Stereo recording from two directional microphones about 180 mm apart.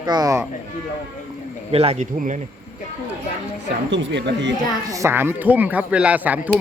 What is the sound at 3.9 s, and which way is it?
Speech, 85° right.